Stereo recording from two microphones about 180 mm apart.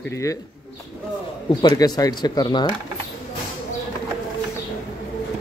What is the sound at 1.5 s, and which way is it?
Speech, 20° left (ahead or behind).